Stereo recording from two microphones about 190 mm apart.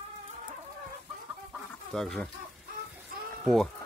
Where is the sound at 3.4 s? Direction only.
Centre (ahead or behind).